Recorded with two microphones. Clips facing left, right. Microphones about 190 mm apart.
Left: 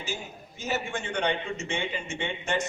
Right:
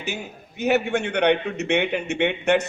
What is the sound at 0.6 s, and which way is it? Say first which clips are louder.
A man's voice: right 10 dB; 65° right (ahead or behind).